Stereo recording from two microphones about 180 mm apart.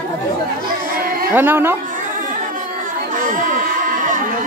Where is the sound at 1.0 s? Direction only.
55° right (ahead or behind).